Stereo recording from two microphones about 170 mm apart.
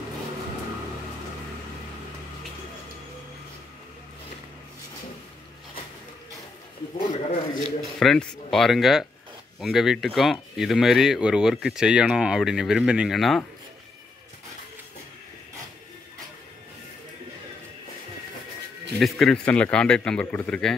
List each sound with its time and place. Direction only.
7.1 s a sound: 40° left (ahead or behind)
7.8 s speech: centre (ahead or behind)
18.9 s speech: centre (ahead or behind)